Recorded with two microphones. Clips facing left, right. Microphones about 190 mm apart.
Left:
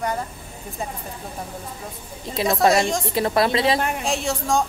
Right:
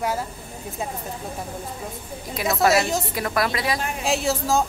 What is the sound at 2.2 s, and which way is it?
A woman's voice, 25° left (ahead or behind).